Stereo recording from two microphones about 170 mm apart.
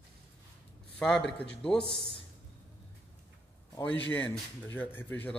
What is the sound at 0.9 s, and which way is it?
Speech, 5° left (ahead or behind).